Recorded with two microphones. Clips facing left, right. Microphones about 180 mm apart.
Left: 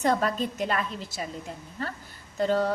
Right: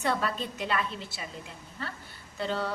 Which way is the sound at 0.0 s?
40° left (ahead or behind).